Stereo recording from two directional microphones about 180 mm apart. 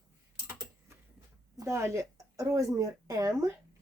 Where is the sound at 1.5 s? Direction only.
15° right (ahead or behind).